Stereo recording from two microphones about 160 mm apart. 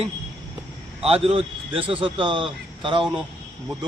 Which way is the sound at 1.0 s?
40° right (ahead or behind).